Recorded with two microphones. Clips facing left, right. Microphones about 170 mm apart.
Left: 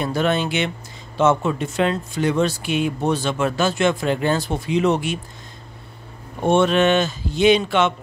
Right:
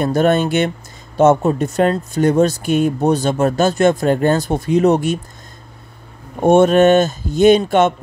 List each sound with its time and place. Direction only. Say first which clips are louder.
0.0 s speech: right 6 dB; 45° right (ahead or behind)
6.4 s speech: right 6 dB; 45° right (ahead or behind)